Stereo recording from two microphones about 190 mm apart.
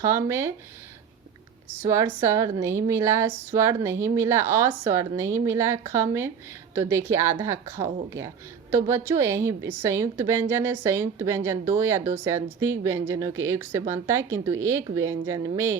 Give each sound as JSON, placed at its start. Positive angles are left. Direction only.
{"t": 0.0, "sound": "speech", "side_deg": -15}
{"t": 1.8, "sound": "speech", "side_deg": -15}